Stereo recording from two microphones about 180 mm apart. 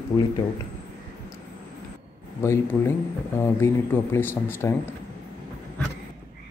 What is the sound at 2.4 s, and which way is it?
A man's voice, 15° left (ahead or behind).